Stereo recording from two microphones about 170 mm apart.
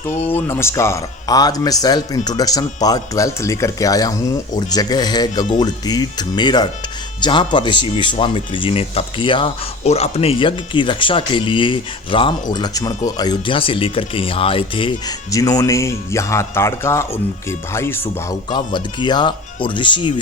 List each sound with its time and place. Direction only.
0.3 s speech: 10° left (ahead or behind); by 14.9 s 30° left (ahead or behind)
15.3 s speech: 20° left (ahead or behind)
18.5 s speech: 25° left (ahead or behind)